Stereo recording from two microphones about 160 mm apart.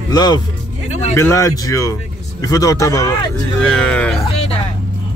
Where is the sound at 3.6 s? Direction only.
5° left (ahead or behind).